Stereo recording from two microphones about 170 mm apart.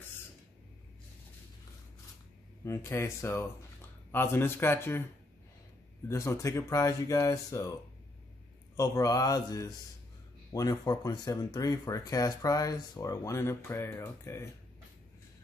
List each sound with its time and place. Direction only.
2.6 s speech: 15° left (ahead or behind)
6.0 s speech: 20° left (ahead or behind)
8.7 s speech: 20° left (ahead or behind)